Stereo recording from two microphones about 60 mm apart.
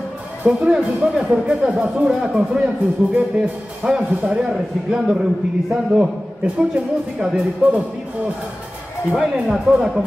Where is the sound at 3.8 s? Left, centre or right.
Centre.